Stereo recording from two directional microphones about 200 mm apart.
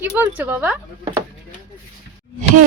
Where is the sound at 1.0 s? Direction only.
25° right (ahead or behind).